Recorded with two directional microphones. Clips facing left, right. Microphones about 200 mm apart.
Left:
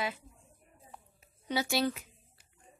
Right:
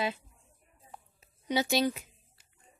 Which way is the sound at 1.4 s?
20° right (ahead or behind).